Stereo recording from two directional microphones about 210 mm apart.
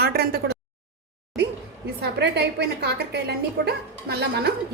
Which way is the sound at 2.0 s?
55° right (ahead or behind).